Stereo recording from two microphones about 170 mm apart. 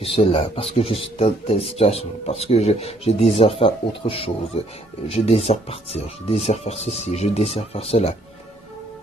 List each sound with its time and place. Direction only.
0.0 s speech: 35° left (ahead or behind)